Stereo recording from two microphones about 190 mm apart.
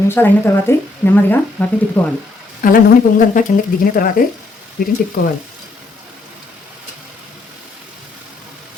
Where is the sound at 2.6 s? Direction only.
45° left (ahead or behind).